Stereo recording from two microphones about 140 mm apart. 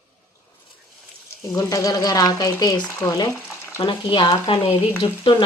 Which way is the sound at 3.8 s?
35° left (ahead or behind).